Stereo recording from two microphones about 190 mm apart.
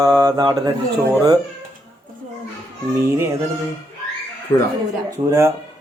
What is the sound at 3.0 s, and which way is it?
Speech, 15° right (ahead or behind).